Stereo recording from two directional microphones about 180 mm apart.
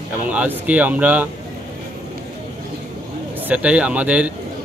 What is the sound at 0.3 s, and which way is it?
Speech, 10° right (ahead or behind).